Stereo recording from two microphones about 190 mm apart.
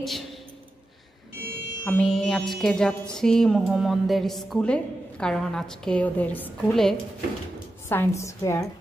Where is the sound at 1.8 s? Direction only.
5° left (ahead or behind).